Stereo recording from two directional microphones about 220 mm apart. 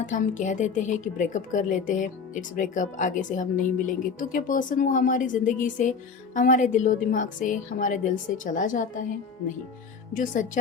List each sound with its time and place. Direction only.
0.0 s a woman's voice: 35° left (ahead or behind)
10.2 s a woman's voice: 35° left (ahead or behind)